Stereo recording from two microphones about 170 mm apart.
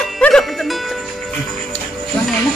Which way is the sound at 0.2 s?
Centre (ahead or behind).